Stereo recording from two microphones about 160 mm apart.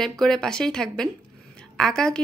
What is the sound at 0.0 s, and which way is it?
A woman's voice, 5° left (ahead or behind).